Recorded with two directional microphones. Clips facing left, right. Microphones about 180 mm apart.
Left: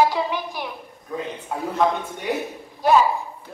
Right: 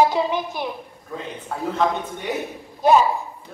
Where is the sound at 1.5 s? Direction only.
15° left (ahead or behind).